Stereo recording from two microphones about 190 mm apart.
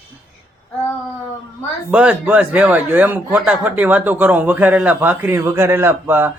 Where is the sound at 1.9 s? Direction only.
5° right (ahead or behind).